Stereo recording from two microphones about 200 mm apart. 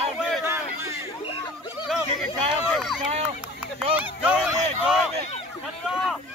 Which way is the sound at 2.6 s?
Centre (ahead or behind).